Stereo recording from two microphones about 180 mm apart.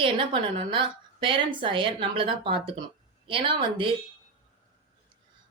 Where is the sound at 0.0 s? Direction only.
30° right (ahead or behind).